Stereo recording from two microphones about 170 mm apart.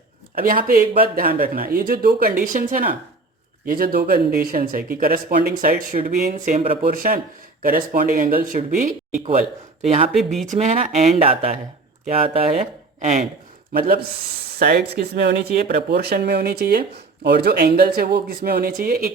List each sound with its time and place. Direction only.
0.3 s speech: 55° right (ahead or behind); by 6.9 s 35° right (ahead or behind)
6.9 s speech: 55° right (ahead or behind)
13.7 s speech: 60° right (ahead or behind)